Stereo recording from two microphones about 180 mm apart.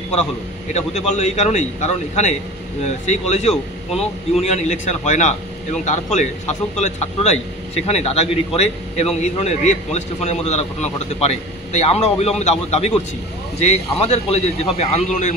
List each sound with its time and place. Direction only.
0.7 s a man's voice: 40° left (ahead or behind)